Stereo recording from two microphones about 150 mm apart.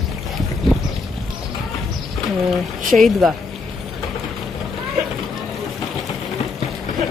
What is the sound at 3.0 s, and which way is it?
Speech, centre (ahead or behind).